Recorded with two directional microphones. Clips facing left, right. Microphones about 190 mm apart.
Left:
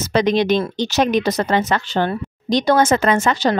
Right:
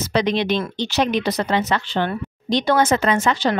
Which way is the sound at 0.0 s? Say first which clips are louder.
Left 3 dB; 45° left (ahead or behind).